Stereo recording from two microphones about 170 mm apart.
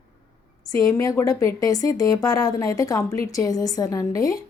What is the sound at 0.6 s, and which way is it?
A woman's voice, 20° left (ahead or behind).